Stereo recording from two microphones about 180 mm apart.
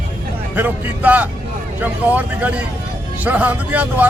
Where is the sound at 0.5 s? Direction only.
10° right (ahead or behind).